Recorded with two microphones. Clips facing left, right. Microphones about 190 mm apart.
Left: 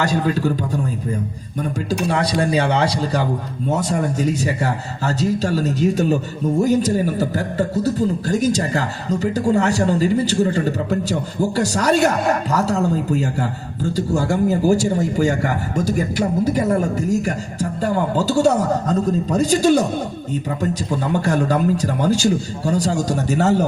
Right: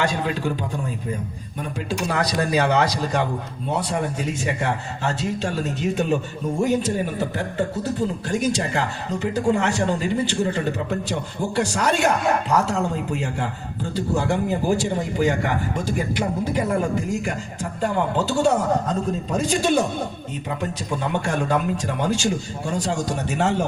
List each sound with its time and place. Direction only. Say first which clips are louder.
0.0 s a man's voice: left 4 dB; 40° left (ahead or behind)
1.9 s a man's voice: left 3 dB; 30° left (ahead or behind)